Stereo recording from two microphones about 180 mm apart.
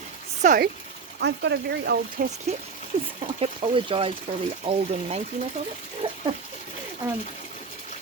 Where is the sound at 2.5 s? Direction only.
35° right (ahead or behind).